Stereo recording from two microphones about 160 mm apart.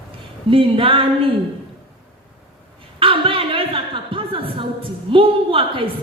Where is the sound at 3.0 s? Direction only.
35° right (ahead or behind).